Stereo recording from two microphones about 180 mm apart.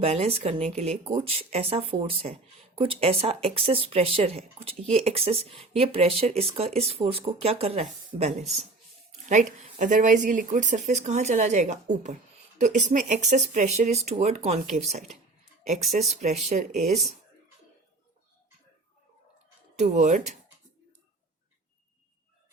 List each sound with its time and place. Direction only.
0.0 s a woman's voice: 35° right (ahead or behind)
16.2 s speech: 35° right (ahead or behind)
19.8 s speech: 40° right (ahead or behind)